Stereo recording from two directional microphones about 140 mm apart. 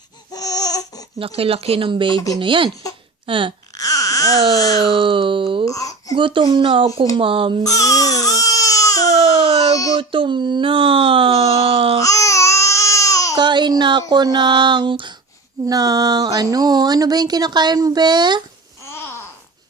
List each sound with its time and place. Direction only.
0.3 s babbling: 25° left (ahead or behind)
1.2 s speech: 45° right (ahead or behind)
3.8 s baby cry: 25° left (ahead or behind)
4.5 s speech: 25° left (ahead or behind)
4.8 s speech: 40° right (ahead or behind)
5.6 s babbling: 25° left (ahead or behind)
6.1 s speech: 35° right (ahead or behind)
7.6 s baby cry: 25° left (ahead or behind)
10.0 s a sound: 40° right (ahead or behind)
11.9 s babbling: 25° left (ahead or behind)
13.3 s speech: 30° right (ahead or behind)
18.9 s babbling: 15° left (ahead or behind)